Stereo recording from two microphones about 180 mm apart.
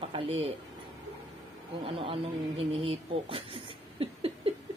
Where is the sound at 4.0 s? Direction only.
30° right (ahead or behind).